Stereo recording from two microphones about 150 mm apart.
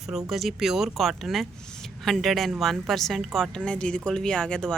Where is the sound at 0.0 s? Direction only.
Centre (ahead or behind).